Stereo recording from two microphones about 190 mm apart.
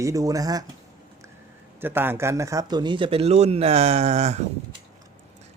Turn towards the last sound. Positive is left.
turn(degrees=-35)  # may be behind; listen again after turning